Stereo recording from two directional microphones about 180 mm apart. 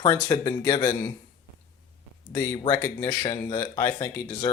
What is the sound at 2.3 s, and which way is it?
Speech, 25° left (ahead or behind).